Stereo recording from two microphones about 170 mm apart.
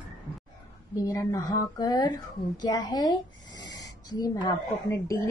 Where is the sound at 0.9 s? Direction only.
20° left (ahead or behind).